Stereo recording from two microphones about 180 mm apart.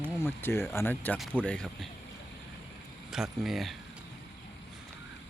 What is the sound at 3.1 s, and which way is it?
Speech, centre (ahead or behind).